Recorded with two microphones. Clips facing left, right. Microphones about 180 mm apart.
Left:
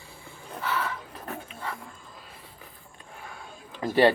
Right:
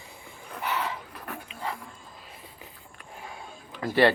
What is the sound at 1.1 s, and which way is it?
Dog, 25° left (ahead or behind).